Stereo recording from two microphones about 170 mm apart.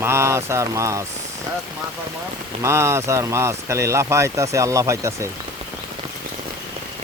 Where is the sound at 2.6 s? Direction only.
15° right (ahead or behind).